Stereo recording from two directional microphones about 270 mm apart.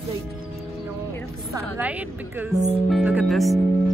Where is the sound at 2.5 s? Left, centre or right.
Right.